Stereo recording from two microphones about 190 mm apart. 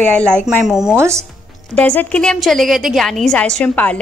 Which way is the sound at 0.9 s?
15° right (ahead or behind).